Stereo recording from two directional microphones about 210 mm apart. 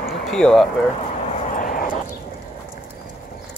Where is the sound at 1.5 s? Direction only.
40° left (ahead or behind).